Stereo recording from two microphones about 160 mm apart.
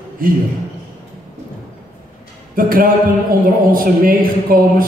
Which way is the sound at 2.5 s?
60° right (ahead or behind).